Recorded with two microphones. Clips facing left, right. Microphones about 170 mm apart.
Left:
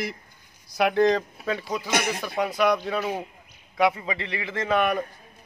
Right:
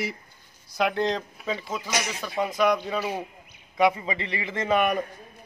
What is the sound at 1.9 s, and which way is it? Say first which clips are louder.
Speech: left 5 dB; 60° left (ahead or behind).